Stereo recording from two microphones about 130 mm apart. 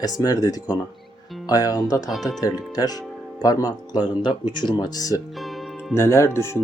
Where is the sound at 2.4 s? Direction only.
30° left (ahead or behind).